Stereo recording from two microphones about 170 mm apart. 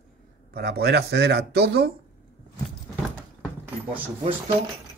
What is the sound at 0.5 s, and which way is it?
Speech, 70° right (ahead or behind).